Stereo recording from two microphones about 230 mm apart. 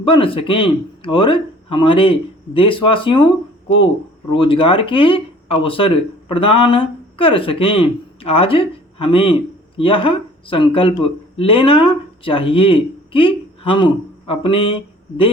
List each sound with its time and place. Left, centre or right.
0.0 s speech: left
4.3 s speech: left